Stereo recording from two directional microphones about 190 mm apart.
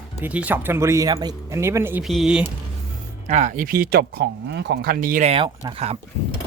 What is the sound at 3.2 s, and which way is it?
Speech, 40° right (ahead or behind).